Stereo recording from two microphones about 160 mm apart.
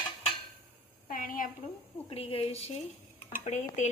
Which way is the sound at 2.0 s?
35° left (ahead or behind).